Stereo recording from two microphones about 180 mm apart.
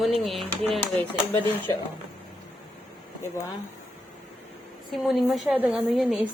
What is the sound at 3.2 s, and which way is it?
Speech, 15° left (ahead or behind).